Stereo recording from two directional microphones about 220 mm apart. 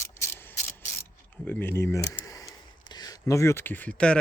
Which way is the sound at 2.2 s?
15° left (ahead or behind).